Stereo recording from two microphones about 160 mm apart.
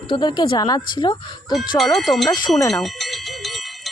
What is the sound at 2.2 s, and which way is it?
Speech, 25° left (ahead or behind).